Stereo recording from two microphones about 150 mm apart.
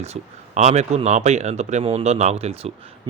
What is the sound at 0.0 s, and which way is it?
A man's voice, 50° right (ahead or behind).